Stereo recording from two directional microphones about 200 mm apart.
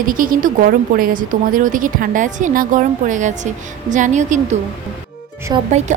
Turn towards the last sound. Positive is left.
turn(degrees=-35)  # may be behind; listen again after turning